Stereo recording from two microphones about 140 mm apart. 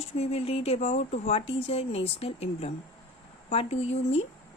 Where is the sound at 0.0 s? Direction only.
50° left (ahead or behind).